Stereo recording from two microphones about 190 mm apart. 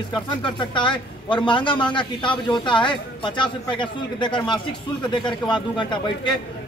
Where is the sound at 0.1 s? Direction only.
25° left (ahead or behind).